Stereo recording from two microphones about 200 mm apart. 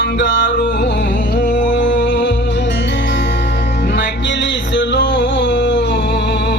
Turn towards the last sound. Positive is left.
turn(degrees=60)  # may be behind; listen again after turning